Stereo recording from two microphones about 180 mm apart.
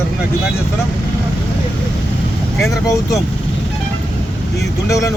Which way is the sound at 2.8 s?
15° left (ahead or behind).